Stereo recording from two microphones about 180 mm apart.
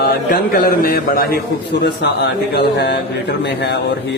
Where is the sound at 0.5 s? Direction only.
55° left (ahead or behind).